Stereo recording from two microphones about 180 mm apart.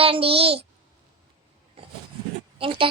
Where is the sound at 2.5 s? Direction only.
30° right (ahead or behind).